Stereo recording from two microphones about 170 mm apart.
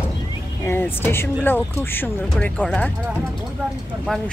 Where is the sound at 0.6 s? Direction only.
10° left (ahead or behind).